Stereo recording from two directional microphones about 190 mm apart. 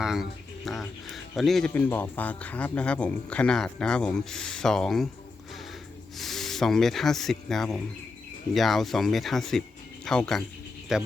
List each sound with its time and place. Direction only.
0.0 s speech: centre (ahead or behind)
6.1 s speech: centre (ahead or behind)